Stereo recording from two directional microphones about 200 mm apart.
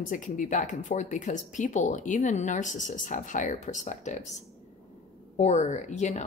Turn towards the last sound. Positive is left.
turn(degrees=35)  # may be behind; listen again after turning